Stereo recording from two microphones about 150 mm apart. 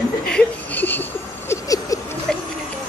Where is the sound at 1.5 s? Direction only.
25° left (ahead or behind).